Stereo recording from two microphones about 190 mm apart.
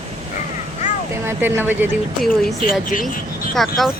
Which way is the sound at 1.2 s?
10° right (ahead or behind).